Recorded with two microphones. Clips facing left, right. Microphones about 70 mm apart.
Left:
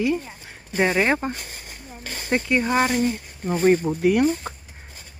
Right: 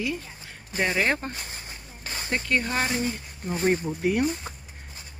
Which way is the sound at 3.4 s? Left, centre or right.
Left.